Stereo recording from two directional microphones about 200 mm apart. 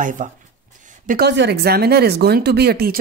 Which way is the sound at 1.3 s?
60° right (ahead or behind).